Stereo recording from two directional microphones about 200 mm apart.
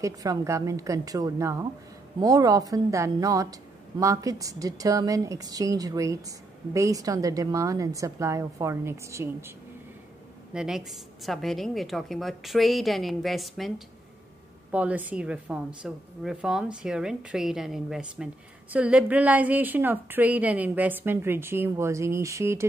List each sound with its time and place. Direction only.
0.0 s a woman's voice: 15° right (ahead or behind)
10.5 s a woman's voice: 5° right (ahead or behind)